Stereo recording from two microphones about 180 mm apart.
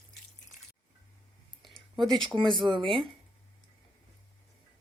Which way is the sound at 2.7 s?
30° right (ahead or behind).